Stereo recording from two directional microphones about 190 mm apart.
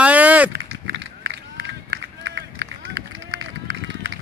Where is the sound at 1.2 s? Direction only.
70° right (ahead or behind).